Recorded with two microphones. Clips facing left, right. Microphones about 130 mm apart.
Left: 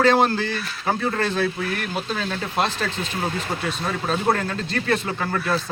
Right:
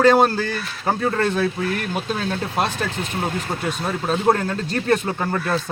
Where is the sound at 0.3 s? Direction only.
45° right (ahead or behind).